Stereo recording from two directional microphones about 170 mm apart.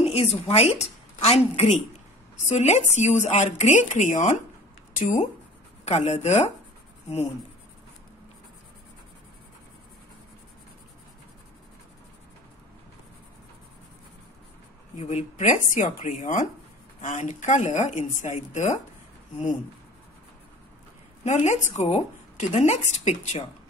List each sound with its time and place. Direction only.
0.0 s a woman's voice: 35° left (ahead or behind)
15.3 s a woman's voice: 45° left (ahead or behind)
21.2 s a woman's voice: 45° left (ahead or behind)